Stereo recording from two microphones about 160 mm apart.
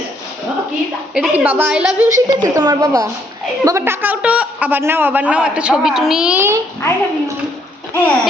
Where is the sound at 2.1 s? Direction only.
20° right (ahead or behind).